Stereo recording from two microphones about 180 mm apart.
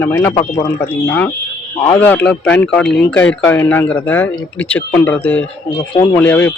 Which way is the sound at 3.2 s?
15° left (ahead or behind).